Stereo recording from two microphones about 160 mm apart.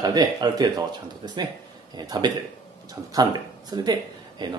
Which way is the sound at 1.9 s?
25° right (ahead or behind).